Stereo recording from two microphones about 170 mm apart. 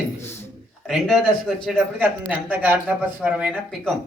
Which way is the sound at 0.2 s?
15° left (ahead or behind).